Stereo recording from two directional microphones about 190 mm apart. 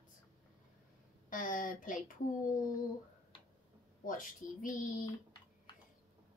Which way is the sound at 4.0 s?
45° left (ahead or behind).